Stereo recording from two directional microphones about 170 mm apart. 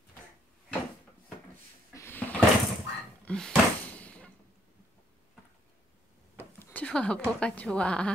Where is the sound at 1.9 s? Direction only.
15° left (ahead or behind).